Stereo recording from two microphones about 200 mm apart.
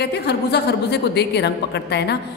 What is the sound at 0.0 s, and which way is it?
A woman's voice, 55° left (ahead or behind).